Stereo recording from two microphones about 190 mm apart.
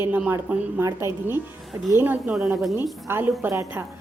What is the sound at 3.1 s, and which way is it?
Speech, 10° right (ahead or behind).